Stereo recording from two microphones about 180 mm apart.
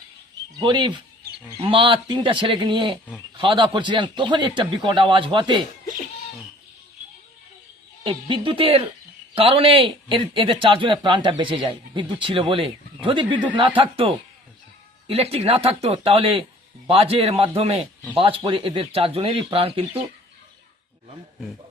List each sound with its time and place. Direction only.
0.6 s speech: 25° right (ahead or behind)
8.0 s a man's voice: 30° right (ahead or behind)